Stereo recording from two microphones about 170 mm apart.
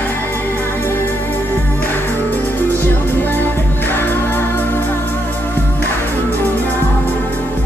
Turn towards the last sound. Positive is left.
turn(degrees=10)  # may be behind; listen again after turning